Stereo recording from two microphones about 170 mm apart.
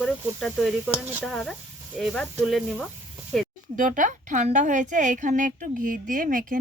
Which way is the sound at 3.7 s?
50° right (ahead or behind).